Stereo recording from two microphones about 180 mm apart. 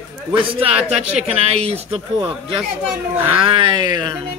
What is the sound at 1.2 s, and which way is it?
Speech, 35° right (ahead or behind).